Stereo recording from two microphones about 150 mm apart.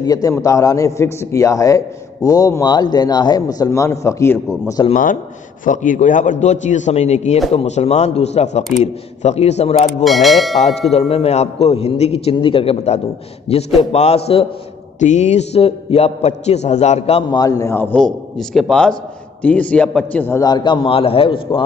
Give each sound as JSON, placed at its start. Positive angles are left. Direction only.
{"t": 0.0, "sound": "a man's voice", "side_deg": 25}
{"t": 5.7, "sound": "a man's voice", "side_deg": 55}
{"t": 10.0, "sound": "a man's voice", "side_deg": 0}
{"t": 10.6, "sound": "a man's voice", "side_deg": 45}
{"t": 15.0, "sound": "a man's voice", "side_deg": 50}
{"t": 17.4, "sound": "a man's voice", "side_deg": 20}
{"t": 17.9, "sound": "a man's voice", "side_deg": 0}
{"t": 20.4, "sound": "a man's voice", "side_deg": 30}